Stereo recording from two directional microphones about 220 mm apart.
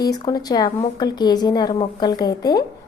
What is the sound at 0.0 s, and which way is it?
A woman's voice, 15° left (ahead or behind).